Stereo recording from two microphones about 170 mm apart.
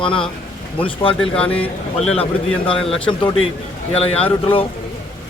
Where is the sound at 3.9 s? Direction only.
35° left (ahead or behind).